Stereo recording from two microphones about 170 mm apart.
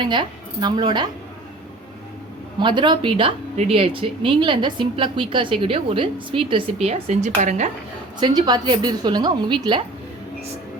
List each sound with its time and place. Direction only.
0.0 s speech: 25° right (ahead or behind)
2.6 s speech: 30° right (ahead or behind)
6.8 s speech: 40° right (ahead or behind)
8.2 s speech: 25° right (ahead or behind)